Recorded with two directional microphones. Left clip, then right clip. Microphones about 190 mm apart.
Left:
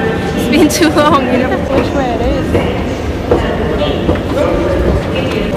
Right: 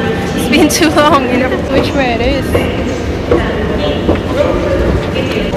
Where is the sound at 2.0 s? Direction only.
15° right (ahead or behind).